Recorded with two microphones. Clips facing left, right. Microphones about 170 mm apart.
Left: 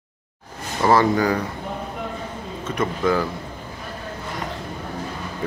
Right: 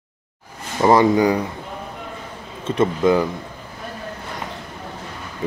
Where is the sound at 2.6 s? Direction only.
25° right (ahead or behind).